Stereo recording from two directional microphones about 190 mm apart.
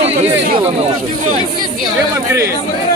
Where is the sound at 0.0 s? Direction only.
35° right (ahead or behind).